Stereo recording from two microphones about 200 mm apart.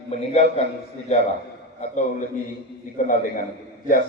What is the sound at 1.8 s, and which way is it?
Speech, 40° left (ahead or behind).